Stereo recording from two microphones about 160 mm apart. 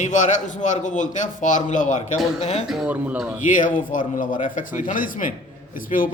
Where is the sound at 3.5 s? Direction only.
55° left (ahead or behind).